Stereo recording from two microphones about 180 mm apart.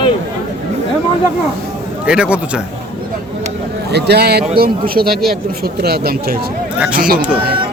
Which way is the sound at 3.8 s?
65° right (ahead or behind).